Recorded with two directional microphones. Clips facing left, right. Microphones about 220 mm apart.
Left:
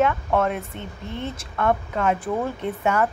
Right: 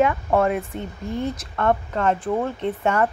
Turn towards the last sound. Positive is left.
turn(degrees=5)  # may be behind; listen again after turning